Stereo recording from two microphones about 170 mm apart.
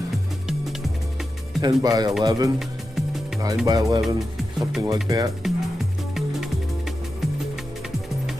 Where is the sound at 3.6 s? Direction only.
20° right (ahead or behind).